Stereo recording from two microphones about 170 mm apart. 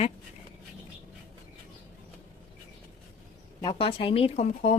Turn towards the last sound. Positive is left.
turn(degrees=40)  # may be behind; listen again after turning